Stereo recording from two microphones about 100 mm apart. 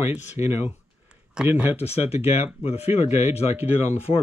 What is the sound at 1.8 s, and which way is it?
Speech, 90° left.